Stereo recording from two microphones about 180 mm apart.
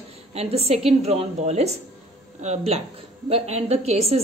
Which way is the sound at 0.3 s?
35° right (ahead or behind).